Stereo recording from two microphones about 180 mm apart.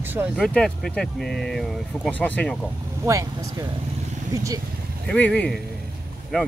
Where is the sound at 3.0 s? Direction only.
15° right (ahead or behind).